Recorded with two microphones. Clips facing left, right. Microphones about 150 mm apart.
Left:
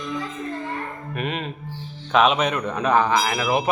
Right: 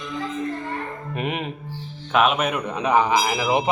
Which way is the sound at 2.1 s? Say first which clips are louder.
Left 1 dB; 5° right (ahead or behind).